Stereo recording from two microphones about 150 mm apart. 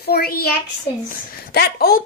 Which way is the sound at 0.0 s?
90° left.